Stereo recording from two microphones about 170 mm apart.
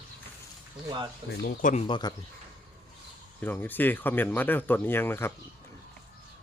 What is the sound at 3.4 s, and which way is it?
Speech, 10° left (ahead or behind).